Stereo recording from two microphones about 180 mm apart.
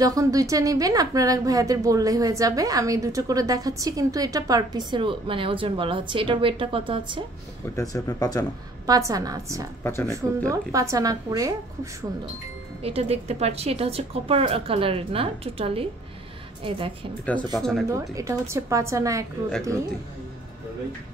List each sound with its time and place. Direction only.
0.0 s a woman's voice: 20° right (ahead or behind)
7.7 s speech: 20° left (ahead or behind)
8.8 s a woman's voice: 20° right (ahead or behind)
12.8 s a woman's voice: 35° right (ahead or behind)
17.3 s speech: 5° left (ahead or behind)
17.9 s a woman's voice: 15° right (ahead or behind)